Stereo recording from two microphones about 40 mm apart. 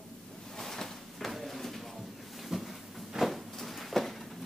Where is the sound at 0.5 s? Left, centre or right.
Centre.